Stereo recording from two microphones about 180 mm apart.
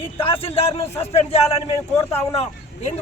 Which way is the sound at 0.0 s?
30° left (ahead or behind).